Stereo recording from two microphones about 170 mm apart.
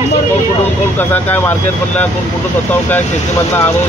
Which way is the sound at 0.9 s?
10° left (ahead or behind).